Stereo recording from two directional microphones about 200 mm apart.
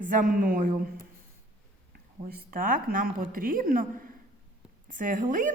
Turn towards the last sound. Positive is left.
turn(degrees=-40)  # may be behind; listen again after turning